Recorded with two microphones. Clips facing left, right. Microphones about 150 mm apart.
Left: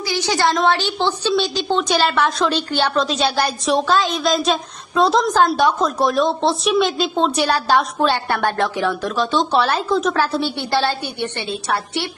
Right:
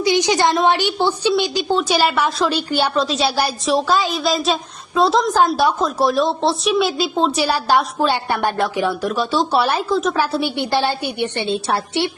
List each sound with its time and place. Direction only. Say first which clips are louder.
0.0 s a woman's voice: right 3 dB; 20° right (ahead or behind)
9.9 s a woman's voice: even; centre (ahead or behind)
10.2 s a woman's voice: even; 10° right (ahead or behind)
11.4 s a woman's voice: right 3 dB; 25° right (ahead or behind)